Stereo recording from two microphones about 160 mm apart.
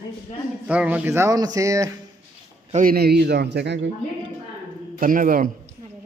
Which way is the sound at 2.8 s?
80° right.